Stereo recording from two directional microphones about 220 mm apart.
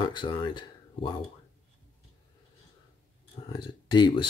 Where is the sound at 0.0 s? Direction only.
20° left (ahead or behind).